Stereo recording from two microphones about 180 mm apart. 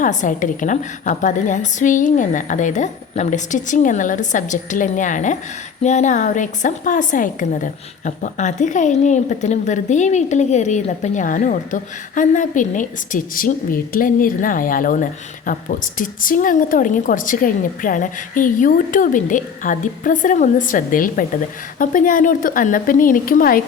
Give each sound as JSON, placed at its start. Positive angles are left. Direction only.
{"t": 0.0, "sound": "a woman's voice", "side_deg": 45}